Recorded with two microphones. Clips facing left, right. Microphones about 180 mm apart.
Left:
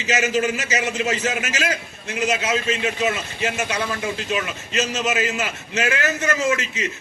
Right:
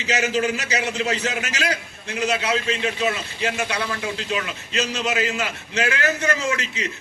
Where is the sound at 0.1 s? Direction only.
15° left (ahead or behind).